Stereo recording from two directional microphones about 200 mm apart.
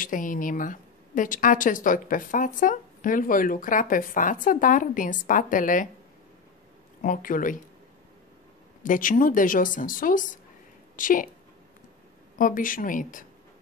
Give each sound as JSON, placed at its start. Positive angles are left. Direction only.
{"t": 0.0, "sound": "a woman's voice", "side_deg": 40}
{"t": 7.0, "sound": "speech", "side_deg": 40}
{"t": 8.8, "sound": "speech", "side_deg": 40}
{"t": 12.4, "sound": "speech", "side_deg": 40}